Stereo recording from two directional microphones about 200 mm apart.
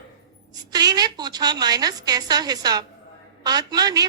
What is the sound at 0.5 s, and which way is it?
A woman's voice, 20° right (ahead or behind).